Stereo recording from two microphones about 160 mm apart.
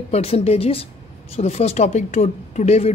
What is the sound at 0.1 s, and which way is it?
A woman's voice, 40° left (ahead or behind).